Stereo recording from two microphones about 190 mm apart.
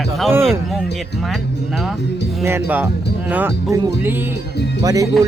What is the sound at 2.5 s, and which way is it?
Speech, 10° right (ahead or behind).